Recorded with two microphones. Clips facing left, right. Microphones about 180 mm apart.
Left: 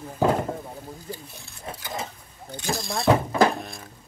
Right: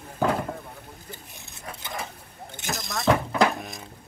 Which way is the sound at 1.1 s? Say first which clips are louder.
Left 6 dB; 20° right (ahead or behind).